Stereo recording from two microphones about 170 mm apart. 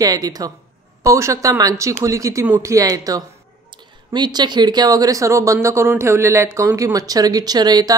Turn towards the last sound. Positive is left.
turn(degrees=-25)  # may be behind; listen again after turning